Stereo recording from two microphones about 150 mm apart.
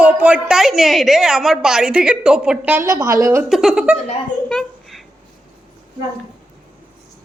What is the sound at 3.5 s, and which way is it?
Speech, centre (ahead or behind).